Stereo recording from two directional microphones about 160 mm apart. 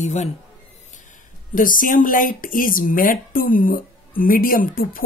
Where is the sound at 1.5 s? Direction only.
60° left (ahead or behind).